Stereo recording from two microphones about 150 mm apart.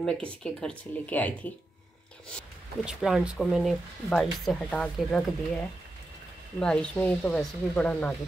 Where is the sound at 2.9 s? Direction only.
5° right (ahead or behind).